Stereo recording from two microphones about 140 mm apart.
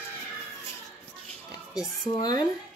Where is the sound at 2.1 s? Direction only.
30° left (ahead or behind).